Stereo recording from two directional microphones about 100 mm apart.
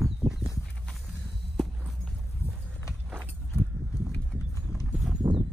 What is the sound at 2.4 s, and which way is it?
Horse, 25° left (ahead or behind).